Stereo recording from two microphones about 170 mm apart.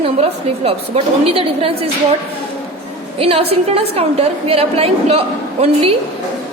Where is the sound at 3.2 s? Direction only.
35° right (ahead or behind).